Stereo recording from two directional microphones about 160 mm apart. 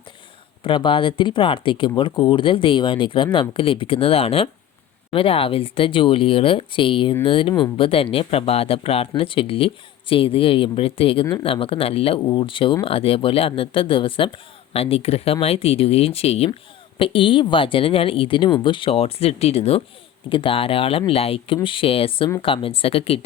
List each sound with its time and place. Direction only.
0.6 s speech: 30° left (ahead or behind)